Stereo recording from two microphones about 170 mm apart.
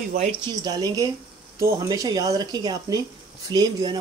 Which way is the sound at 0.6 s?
25° right (ahead or behind).